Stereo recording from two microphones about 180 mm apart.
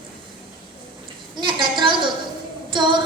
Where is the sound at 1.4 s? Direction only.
25° right (ahead or behind).